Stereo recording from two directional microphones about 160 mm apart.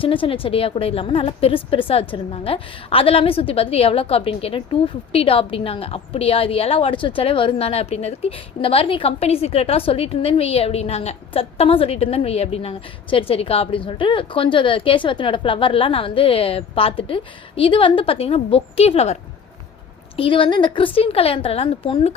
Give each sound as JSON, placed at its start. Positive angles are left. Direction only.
{"t": 0.0, "sound": "a woman's voice", "side_deg": 35}